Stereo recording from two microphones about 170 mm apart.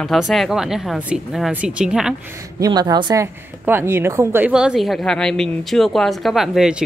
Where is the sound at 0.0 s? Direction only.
Centre (ahead or behind).